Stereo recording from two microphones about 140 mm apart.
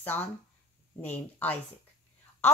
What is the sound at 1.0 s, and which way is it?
Speech, 10° left (ahead or behind).